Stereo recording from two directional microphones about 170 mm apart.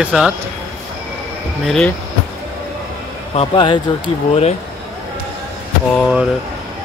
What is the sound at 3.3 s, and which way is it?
Speech, 30° left (ahead or behind).